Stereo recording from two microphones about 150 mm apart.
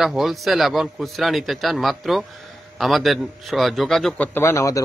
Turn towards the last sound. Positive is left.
turn(degrees=20)  # may be behind; listen again after turning